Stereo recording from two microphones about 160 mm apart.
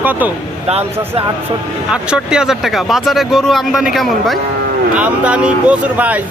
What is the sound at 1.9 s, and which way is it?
Speech, 5° right (ahead or behind).